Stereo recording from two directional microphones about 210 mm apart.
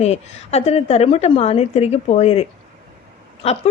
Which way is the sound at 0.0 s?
30° left (ahead or behind).